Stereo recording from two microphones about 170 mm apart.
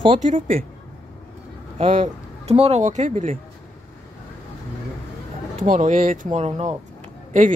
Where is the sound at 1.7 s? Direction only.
35° right (ahead or behind).